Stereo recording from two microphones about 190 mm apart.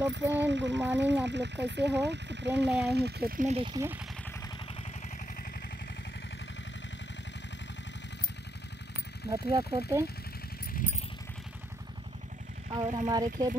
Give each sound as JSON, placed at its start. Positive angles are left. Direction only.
{"t": 0.0, "sound": "speech", "side_deg": -70}
{"t": 3.5, "sound": "speech", "side_deg": -25}
{"t": 9.3, "sound": "speech", "side_deg": -15}
{"t": 10.7, "sound": "vehicle", "side_deg": 45}
{"t": 13.1, "sound": "speech", "side_deg": -20}